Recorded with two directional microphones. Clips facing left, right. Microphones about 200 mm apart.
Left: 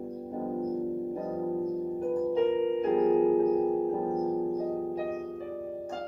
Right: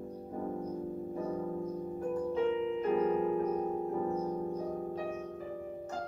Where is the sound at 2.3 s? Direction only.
25° left (ahead or behind).